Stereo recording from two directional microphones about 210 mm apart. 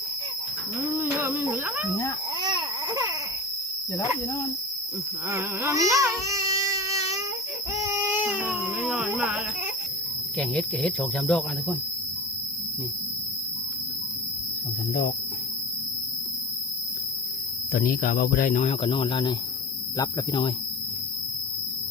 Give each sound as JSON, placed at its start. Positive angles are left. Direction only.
{"t": 0.9, "sound": "a sound", "side_deg": -10}
{"t": 2.4, "sound": "baby cry", "side_deg": -20}
{"t": 5.3, "sound": "a sound", "side_deg": -15}
{"t": 7.9, "sound": "baby cry", "side_deg": -10}
{"t": 10.3, "sound": "speech", "side_deg": 5}
{"t": 17.7, "sound": "speech", "side_deg": 40}
{"t": 18.5, "sound": "speech", "side_deg": 30}